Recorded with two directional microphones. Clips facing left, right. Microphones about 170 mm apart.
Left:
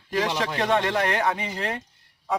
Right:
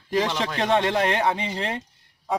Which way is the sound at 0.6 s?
20° right (ahead or behind).